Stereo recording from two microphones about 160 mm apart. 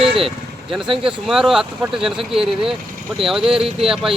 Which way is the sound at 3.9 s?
Centre (ahead or behind).